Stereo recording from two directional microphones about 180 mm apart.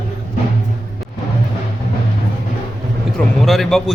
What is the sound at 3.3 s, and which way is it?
Speech, centre (ahead or behind).